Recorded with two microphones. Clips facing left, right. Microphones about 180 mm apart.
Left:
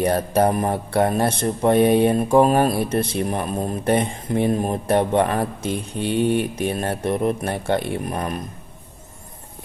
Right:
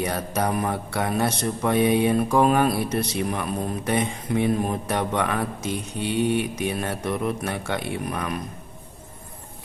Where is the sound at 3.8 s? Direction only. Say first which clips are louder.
Left 5 dB; 55° left (ahead or behind).